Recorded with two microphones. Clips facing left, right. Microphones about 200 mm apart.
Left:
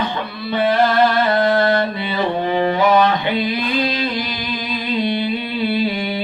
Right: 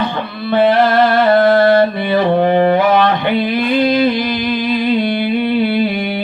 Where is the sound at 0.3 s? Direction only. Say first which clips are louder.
Right 5 dB; 55° right (ahead or behind).